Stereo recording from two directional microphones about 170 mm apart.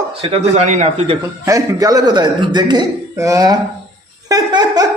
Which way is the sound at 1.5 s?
20° right (ahead or behind).